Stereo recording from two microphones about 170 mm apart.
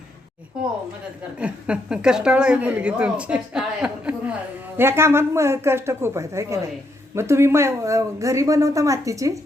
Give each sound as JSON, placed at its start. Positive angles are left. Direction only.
{"t": 1.4, "sound": "a woman's voice", "side_deg": -5}